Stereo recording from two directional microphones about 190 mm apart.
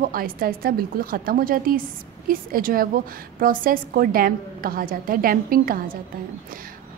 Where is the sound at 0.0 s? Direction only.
50° right (ahead or behind).